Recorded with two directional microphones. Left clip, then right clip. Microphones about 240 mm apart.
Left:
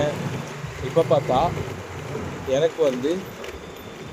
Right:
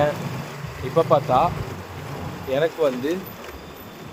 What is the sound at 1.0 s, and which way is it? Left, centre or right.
Speech, centre.